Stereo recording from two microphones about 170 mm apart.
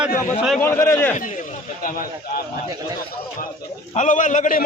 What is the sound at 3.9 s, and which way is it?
Speech, 45° left (ahead or behind).